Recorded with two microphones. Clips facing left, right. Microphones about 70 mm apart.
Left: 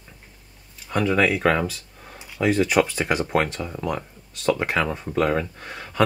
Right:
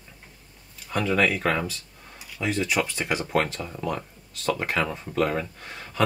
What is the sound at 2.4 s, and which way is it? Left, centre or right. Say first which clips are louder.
Speech: left 6 dB; left.